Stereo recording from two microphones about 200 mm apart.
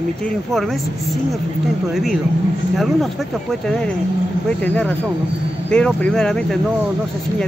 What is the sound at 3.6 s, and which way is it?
Speech, 5° left (ahead or behind).